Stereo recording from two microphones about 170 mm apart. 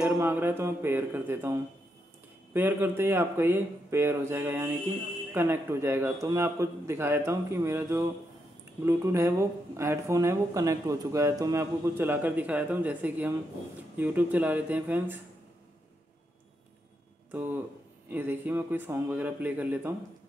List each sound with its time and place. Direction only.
0.0 s speech: 10° right (ahead or behind)
17.3 s speech: 10° right (ahead or behind)